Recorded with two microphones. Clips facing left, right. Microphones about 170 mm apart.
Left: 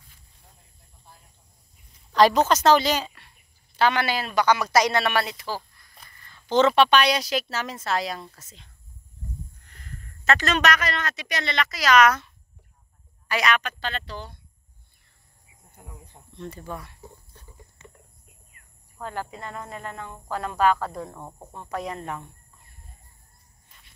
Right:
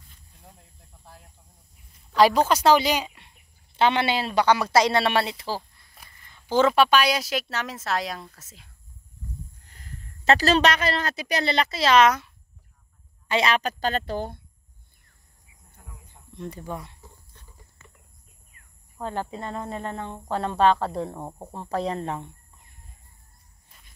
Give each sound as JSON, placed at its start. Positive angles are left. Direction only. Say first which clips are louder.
{"t": 2.1, "sound": "speech", "louder": "even", "side_deg": -10}
{"t": 6.5, "sound": "a woman's voice", "louder": "left 1 dB", "side_deg": -5}
{"t": 9.7, "sound": "a woman's voice", "louder": "even", "side_deg": -30}
{"t": 13.3, "sound": "speech", "louder": "right 2 dB", "side_deg": -30}
{"t": 15.8, "sound": "a sound", "louder": "left 4 dB", "side_deg": 20}
{"t": 16.3, "sound": "speech", "louder": "right 2 dB", "side_deg": -15}
{"t": 18.9, "sound": "speech", "louder": "right 3 dB", "side_deg": -25}